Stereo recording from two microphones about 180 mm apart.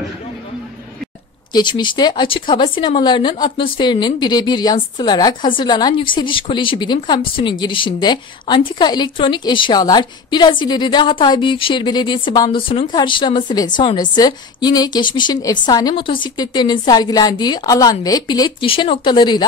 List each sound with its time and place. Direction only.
1.5 s a woman's voice: 25° left (ahead or behind)